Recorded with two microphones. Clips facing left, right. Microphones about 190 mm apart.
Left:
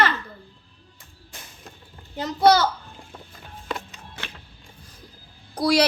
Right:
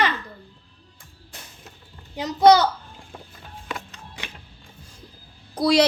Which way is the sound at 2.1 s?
15° right (ahead or behind).